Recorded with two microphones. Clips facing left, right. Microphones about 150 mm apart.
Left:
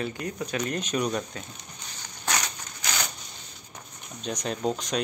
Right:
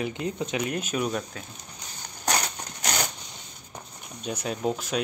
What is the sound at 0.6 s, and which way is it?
Speech, 10° right (ahead or behind).